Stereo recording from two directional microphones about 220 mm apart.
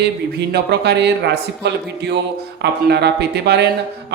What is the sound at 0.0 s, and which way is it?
Speech, 50° right (ahead or behind).